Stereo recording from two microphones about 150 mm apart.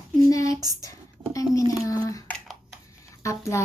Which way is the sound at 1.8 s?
20° left (ahead or behind).